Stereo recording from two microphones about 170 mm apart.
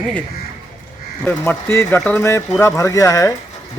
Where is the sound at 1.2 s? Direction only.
10° left (ahead or behind).